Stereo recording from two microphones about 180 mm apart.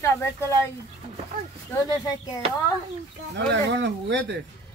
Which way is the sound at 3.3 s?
80° right.